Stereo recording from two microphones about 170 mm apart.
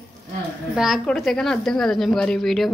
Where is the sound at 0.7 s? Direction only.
Centre (ahead or behind).